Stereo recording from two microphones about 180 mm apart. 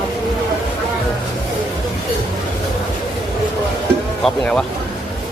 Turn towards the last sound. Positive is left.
turn(degrees=5)  # may be behind; listen again after turning